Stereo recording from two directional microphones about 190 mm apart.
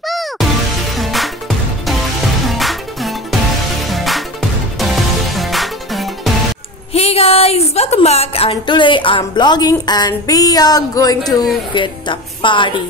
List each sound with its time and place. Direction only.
0.0 s music: centre (ahead or behind)
2.4 s music: centre (ahead or behind)
6.9 s a woman's voice: 30° left (ahead or behind)